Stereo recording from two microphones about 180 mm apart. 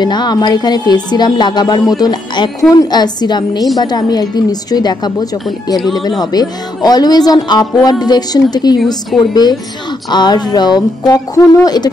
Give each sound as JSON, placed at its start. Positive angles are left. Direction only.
{"t": 0.0, "sound": "speech", "side_deg": 25}
{"t": 8.7, "sound": "a woman's voice", "side_deg": 0}
{"t": 9.3, "sound": "speech", "side_deg": 25}